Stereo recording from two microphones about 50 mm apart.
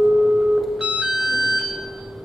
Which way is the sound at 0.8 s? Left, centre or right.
Centre.